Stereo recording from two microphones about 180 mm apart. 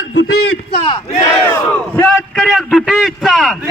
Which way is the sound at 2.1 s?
Centre (ahead or behind).